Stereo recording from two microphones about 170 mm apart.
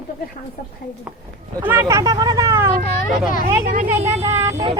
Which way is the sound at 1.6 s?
10° right (ahead or behind).